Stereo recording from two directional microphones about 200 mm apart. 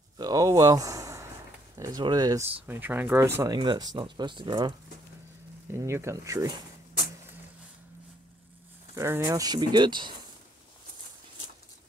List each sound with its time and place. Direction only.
0.2 s speech: 20° right (ahead or behind)
3.5 s speech: 25° right (ahead or behind)
8.9 s speech: 15° right (ahead or behind)